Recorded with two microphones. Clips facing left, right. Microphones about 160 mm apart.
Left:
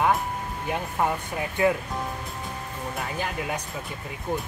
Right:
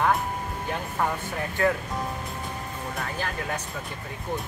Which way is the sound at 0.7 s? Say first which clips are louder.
Left 3 dB; 15° left (ahead or behind).